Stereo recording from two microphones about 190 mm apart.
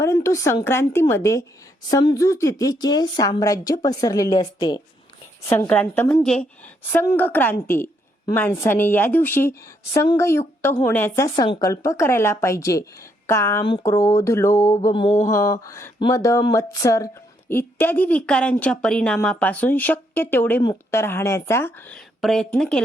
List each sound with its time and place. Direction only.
0.0 s a woman's voice: 15° left (ahead or behind)
15.2 s a woman's voice: 15° left (ahead or behind)